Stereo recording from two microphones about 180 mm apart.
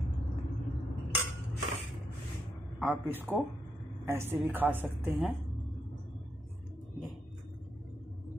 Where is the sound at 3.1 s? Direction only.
10° right (ahead or behind).